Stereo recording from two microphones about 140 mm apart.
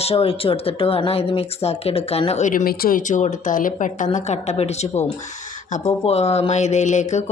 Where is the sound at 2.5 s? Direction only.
80° left; by 7.2 s 60° left (ahead or behind).